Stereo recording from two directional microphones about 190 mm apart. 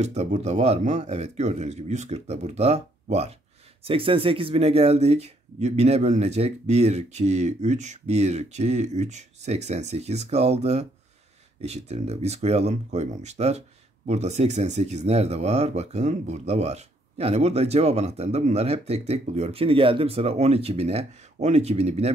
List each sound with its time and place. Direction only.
0.0 s speech: 35° right (ahead or behind)